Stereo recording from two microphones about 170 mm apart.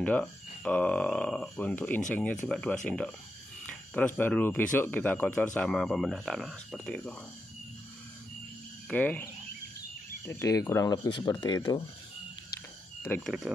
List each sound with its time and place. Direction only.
0.0 s speech: 10° left (ahead or behind)
8.8 s speech: 10° left (ahead or behind)
13.2 s speech: 5° right (ahead or behind)